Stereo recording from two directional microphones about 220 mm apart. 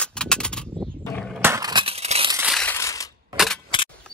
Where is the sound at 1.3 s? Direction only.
10° right (ahead or behind); by 2.3 s 30° right (ahead or behind).